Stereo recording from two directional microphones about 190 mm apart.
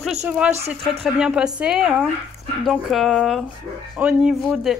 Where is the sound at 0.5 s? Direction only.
35° right (ahead or behind).